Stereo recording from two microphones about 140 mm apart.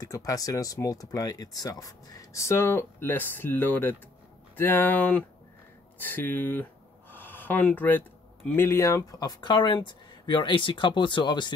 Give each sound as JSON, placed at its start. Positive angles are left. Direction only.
{"t": 0.0, "sound": "speech", "side_deg": 25}
{"t": 5.9, "sound": "a sound", "side_deg": 15}
{"t": 8.5, "sound": "speech", "side_deg": 20}